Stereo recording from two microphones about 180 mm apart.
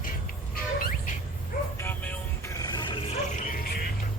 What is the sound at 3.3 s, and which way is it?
Music, 50° left (ahead or behind).